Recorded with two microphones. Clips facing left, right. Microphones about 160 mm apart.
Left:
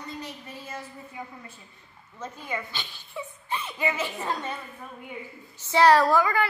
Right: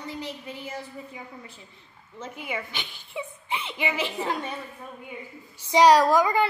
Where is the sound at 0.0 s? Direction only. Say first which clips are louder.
Right 3 dB; 15° right (ahead or behind).